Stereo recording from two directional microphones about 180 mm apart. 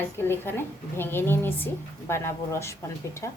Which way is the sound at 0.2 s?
10° left (ahead or behind).